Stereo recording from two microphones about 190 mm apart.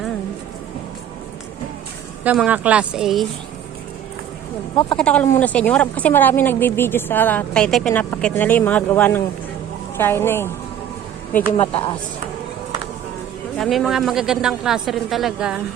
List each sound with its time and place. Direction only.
2.2 s a woman's voice: 5° right (ahead or behind)
4.9 s a woman's voice: 5° left (ahead or behind)
11.5 s a woman's voice: 30° left (ahead or behind)
13.6 s a woman's voice: centre (ahead or behind)